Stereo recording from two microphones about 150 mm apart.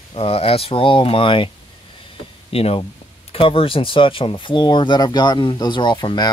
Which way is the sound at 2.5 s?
40° left (ahead or behind).